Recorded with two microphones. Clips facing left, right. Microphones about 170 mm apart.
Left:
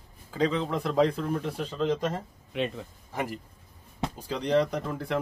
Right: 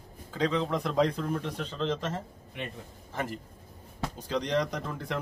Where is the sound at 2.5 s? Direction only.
90° left.